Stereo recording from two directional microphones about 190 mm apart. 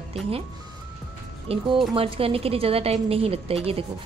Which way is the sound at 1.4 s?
25° right (ahead or behind).